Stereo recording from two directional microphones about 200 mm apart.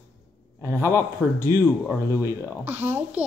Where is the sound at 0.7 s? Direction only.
15° left (ahead or behind).